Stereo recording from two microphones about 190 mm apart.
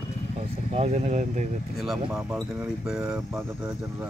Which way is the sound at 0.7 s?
35° right (ahead or behind).